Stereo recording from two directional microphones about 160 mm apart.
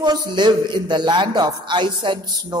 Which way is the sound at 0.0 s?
30° right (ahead or behind).